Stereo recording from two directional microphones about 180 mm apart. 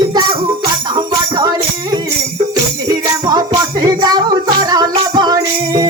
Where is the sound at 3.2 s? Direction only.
20° right (ahead or behind).